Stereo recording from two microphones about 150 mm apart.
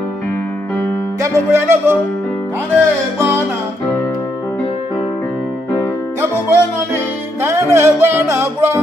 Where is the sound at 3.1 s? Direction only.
15° right (ahead or behind).